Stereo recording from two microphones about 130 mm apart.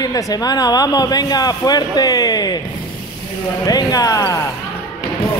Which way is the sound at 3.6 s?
30° left (ahead or behind).